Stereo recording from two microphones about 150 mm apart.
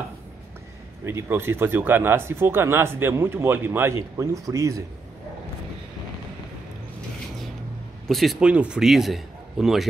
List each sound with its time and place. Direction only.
1.0 s speech: 15° right (ahead or behind)
8.1 s a man's voice: centre (ahead or behind)